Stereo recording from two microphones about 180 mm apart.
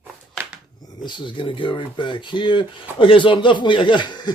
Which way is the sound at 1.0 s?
25° left (ahead or behind).